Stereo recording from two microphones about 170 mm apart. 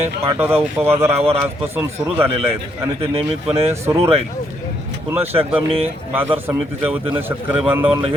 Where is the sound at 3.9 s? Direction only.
35° right (ahead or behind).